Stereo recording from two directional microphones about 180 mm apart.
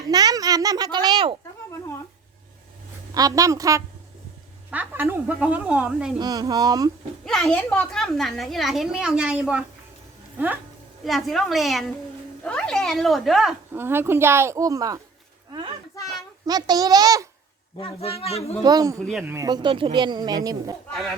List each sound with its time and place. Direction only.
0.1 s a sound: 20° right (ahead or behind)
3.2 s speech: 20° right (ahead or behind)
6.1 s speech: 20° right (ahead or behind)
7.3 s a child's voice: centre (ahead or behind)
13.7 s speech: 10° right (ahead or behind)
16.5 s speech: 20° right (ahead or behind)
17.7 s speech: 35° left (ahead or behind)
18.6 s speech: 20° right (ahead or behind)
18.9 s a child's voice: 5° left (ahead or behind)
19.2 s speech: 15° right (ahead or behind)